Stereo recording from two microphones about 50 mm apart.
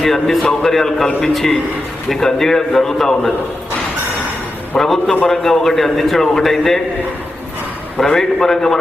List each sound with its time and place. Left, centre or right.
0.0 s a man's voice: centre
4.8 s a man's voice: centre
7.9 s a man's voice: centre